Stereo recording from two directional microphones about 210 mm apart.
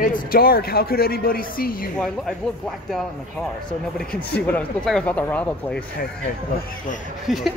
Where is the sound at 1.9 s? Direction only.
Centre (ahead or behind).